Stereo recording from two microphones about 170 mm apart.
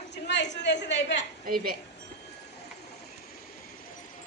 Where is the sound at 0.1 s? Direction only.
90° left.